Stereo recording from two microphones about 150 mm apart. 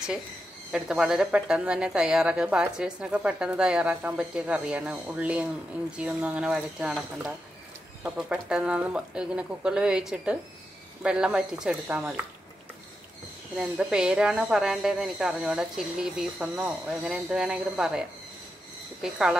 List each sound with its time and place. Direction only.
0.7 s a woman's voice: 5° right (ahead or behind)
13.6 s speech: 5° right (ahead or behind)